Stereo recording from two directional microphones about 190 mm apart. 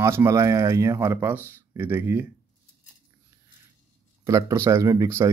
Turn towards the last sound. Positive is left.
turn(degrees=-15)  # may be behind; listen again after turning